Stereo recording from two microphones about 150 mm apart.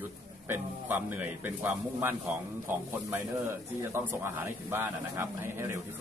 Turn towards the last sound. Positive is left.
turn(degrees=-15)  # may be behind; listen again after turning